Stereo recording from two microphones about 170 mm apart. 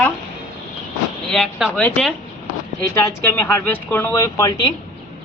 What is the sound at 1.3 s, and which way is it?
Speech, 5° left (ahead or behind).